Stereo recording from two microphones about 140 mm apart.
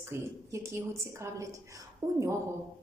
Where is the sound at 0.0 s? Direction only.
20° right (ahead or behind).